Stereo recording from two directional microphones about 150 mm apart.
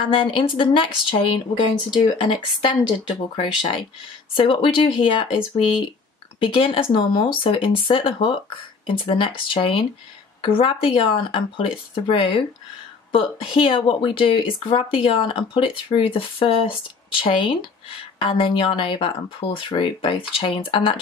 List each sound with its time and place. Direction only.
0.1 s speech: 35° left (ahead or behind)
6.4 s speech: 35° left (ahead or behind)